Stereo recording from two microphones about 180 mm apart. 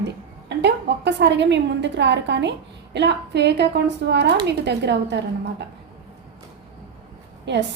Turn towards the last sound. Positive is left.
turn(degrees=-75)  # may be behind; listen again after turning